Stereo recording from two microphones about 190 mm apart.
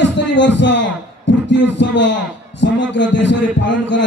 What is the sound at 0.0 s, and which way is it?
A man's voice, 70° left (ahead or behind).